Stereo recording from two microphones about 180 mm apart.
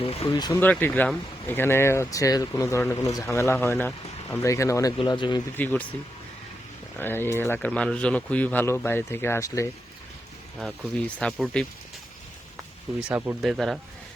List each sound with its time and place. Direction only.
0.0 s speech: 35° left (ahead or behind)
0.3 s speech: 20° left (ahead or behind)
0.6 s speech: 10° left (ahead or behind); by 5.4 s 25° left (ahead or behind)
5.5 s speech: 10° left (ahead or behind)
7.0 s speech: 10° left (ahead or behind)
10.6 s speech: 5° left (ahead or behind)
13.1 s speech: 10° right (ahead or behind)
13.4 s speech: centre (ahead or behind)